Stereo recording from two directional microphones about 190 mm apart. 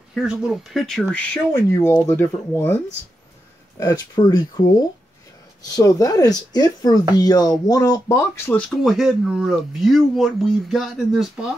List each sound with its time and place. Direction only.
0.1 s speech: 5° right (ahead or behind)
3.8 s speech: 20° left (ahead or behind)
8.5 s speech: 5° left (ahead or behind)